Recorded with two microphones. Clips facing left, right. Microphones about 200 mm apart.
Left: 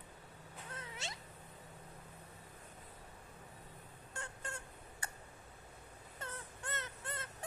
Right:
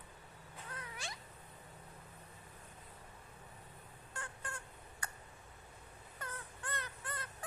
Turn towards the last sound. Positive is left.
turn(degrees=25)  # may be behind; listen again after turning